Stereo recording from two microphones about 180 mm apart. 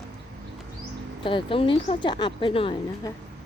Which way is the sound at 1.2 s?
30° left (ahead or behind).